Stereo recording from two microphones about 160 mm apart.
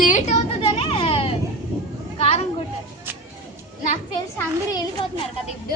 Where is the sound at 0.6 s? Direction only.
35° left (ahead or behind).